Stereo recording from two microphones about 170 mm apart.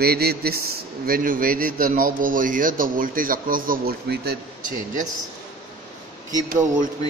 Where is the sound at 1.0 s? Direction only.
55° right (ahead or behind); by 4.7 s 75° right (ahead or behind).